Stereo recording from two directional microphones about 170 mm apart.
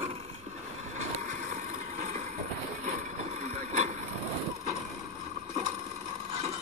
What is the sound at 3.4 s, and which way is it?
Vehicle, 45° right (ahead or behind).